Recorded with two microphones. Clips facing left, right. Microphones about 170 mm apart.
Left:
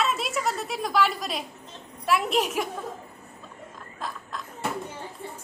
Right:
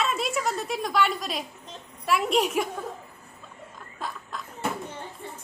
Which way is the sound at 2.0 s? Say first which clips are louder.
Even; centre (ahead or behind).